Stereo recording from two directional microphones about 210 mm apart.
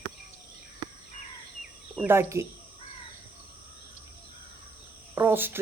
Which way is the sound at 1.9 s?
10° right (ahead or behind).